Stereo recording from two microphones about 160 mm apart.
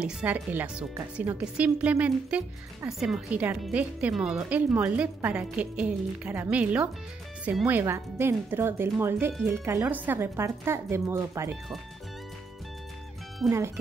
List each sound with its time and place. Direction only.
0.0 s speech: 10° right (ahead or behind)
13.4 s speech: centre (ahead or behind)